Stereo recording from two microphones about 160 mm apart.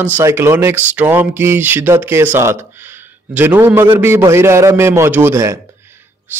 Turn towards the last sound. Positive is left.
turn(degrees=-20)  # may be behind; listen again after turning